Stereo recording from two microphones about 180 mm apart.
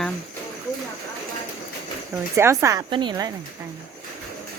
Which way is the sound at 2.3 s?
15° right (ahead or behind).